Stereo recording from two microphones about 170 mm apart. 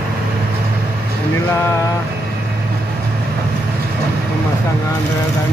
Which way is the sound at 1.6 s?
15° left (ahead or behind).